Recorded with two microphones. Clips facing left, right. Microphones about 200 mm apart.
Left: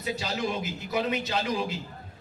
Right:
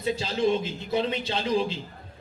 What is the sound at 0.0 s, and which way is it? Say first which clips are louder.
A man's voice: right 5 dB; 30° right (ahead or behind).